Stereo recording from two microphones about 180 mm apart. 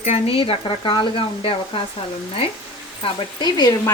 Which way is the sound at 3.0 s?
25° left (ahead or behind).